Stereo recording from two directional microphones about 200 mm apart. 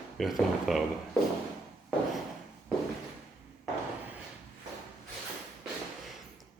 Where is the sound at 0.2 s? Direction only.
Centre (ahead or behind).